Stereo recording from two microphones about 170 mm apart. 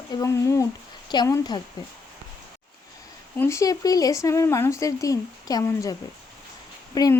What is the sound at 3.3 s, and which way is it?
Speech, 15° left (ahead or behind).